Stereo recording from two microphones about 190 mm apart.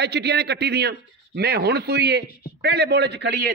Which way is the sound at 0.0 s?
60° right (ahead or behind).